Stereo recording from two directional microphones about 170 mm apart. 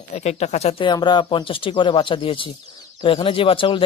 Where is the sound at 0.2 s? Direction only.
40° left (ahead or behind).